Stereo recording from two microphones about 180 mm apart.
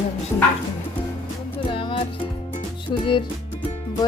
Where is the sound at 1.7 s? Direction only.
30° left (ahead or behind).